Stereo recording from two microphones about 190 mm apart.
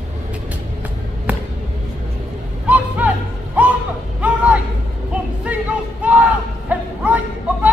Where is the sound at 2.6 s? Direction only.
10° right (ahead or behind).